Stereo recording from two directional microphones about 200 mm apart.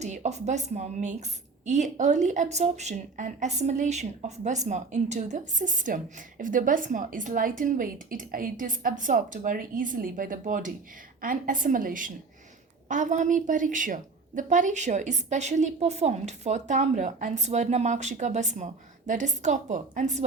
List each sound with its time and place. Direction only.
0.0 s a woman's voice: 35° right (ahead or behind)